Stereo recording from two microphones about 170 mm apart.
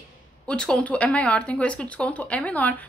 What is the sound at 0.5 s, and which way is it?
Speech, 5° left (ahead or behind).